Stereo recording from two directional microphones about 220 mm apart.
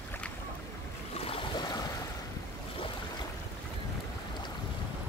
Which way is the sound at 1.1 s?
25° left (ahead or behind).